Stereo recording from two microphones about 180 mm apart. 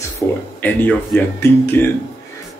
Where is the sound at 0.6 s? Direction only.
10° left (ahead or behind).